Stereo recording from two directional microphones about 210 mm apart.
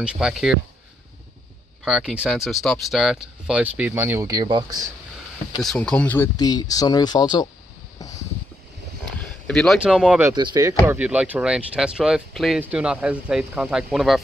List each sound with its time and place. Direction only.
0.0 s speech: 5° right (ahead or behind)
1.9 s speech: centre (ahead or behind); by 4.7 s 20° right (ahead or behind)
5.6 s speech: 5° left (ahead or behind); by 7.4 s 20° left (ahead or behind)
9.5 s speech: centre (ahead or behind)
10.3 s speech: 20° right (ahead or behind); by 14.2 s centre (ahead or behind)